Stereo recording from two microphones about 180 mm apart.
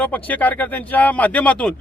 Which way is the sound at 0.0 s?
10° left (ahead or behind).